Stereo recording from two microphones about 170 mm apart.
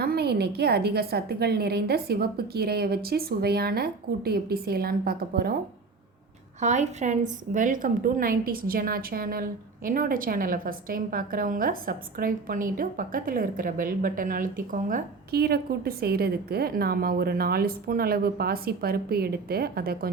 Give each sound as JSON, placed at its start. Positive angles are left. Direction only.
{"t": 0.0, "sound": "a woman's voice", "side_deg": -70}
{"t": 6.6, "sound": "a woman's voice", "side_deg": -45}